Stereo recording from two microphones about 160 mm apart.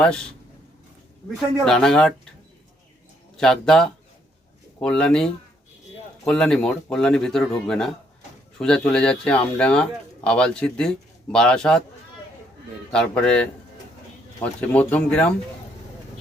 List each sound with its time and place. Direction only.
0.0 s speech: 5° left (ahead or behind)
1.6 s speech: 5° left (ahead or behind)
3.3 s speech: 5° left (ahead or behind)
12.9 s speech: 5° left (ahead or behind)